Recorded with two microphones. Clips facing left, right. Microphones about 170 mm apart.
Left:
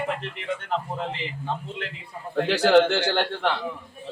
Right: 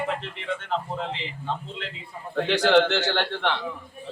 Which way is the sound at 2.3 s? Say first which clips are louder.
Left 2 dB; 5° left (ahead or behind).